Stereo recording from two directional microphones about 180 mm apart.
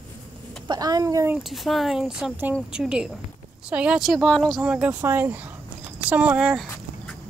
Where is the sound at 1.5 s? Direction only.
Centre (ahead or behind).